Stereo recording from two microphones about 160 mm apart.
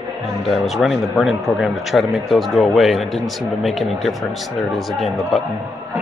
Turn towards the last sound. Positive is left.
turn(degrees=0)  # may be behind; listen again after turning